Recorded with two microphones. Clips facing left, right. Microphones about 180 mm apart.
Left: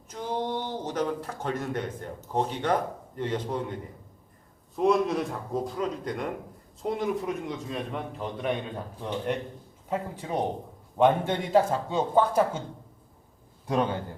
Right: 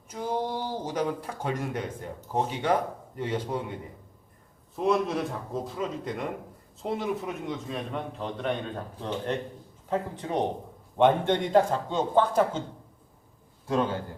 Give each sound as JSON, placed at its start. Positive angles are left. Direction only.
{"t": 0.1, "sound": "speech", "side_deg": -10}
{"t": 4.8, "sound": "a man's voice", "side_deg": 0}
{"t": 13.7, "sound": "a man's voice", "side_deg": 20}